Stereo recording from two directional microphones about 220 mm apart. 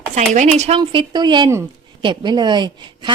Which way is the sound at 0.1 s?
35° right (ahead or behind).